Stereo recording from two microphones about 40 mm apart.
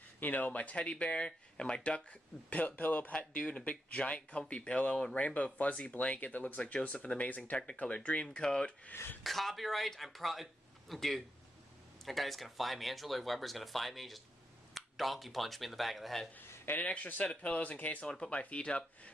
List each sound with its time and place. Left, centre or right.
0.2 s speech: left
3.1 s speech: left
9.2 s speech: centre
16.3 s a sound: left
17.0 s speech: left
17.3 s speech: left
18.0 s speech: centre
18.3 s speech: left